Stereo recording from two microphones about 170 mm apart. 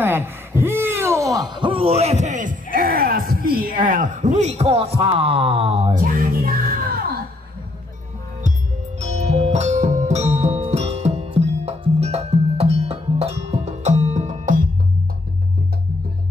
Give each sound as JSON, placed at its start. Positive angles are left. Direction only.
{"t": 0.0, "sound": "a sound", "side_deg": -15}
{"t": 3.4, "sound": "speech", "side_deg": -60}
{"t": 5.9, "sound": "music", "side_deg": -55}
{"t": 9.0, "sound": "music", "side_deg": -40}